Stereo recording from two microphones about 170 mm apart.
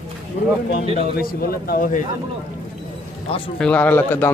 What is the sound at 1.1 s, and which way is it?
Speech, 60° left (ahead or behind).